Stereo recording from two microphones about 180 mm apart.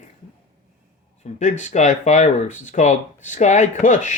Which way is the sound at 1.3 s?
40° left (ahead or behind).